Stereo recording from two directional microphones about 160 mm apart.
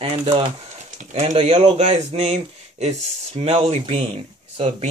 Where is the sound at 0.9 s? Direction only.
40° right (ahead or behind).